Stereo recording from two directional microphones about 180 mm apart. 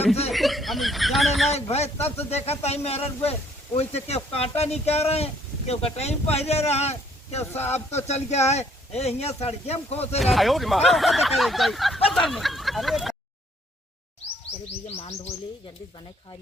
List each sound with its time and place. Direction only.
0.3 s speech: centre (ahead or behind)
1.7 s speech: 35° left (ahead or behind)
10.2 s speech: centre (ahead or behind)
14.8 s speech: 35° left (ahead or behind)